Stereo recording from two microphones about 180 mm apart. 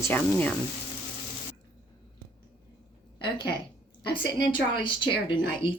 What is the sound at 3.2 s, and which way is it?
A woman's voice, 25° left (ahead or behind).